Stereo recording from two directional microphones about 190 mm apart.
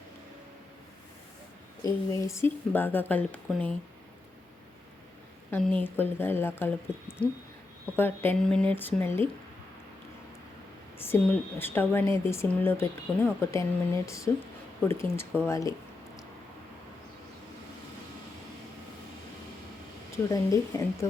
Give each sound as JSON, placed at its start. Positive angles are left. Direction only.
{"t": 1.8, "sound": "speech", "side_deg": 15}
{"t": 5.5, "sound": "speech", "side_deg": 10}
{"t": 7.9, "sound": "speech", "side_deg": 10}
{"t": 10.9, "sound": "speech", "side_deg": 10}
{"t": 20.2, "sound": "speech", "side_deg": 15}